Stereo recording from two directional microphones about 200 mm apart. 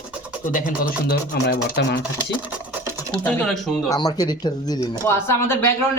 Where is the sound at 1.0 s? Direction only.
55° left (ahead or behind).